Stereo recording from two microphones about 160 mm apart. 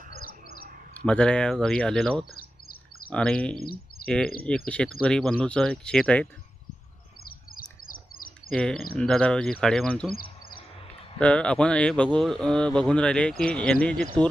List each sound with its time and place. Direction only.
1.0 s speech: 5° left (ahead or behind)
2.3 s bird: 65° left (ahead or behind)
3.1 s speech: 5° left (ahead or behind)
3.6 s speech: 70° left (ahead or behind)
4.4 s speech: 5° left (ahead or behind)
7.9 s bird: 60° left (ahead or behind)
8.4 s speech: 5° left (ahead or behind)
11.2 s speech: 5° left (ahead or behind)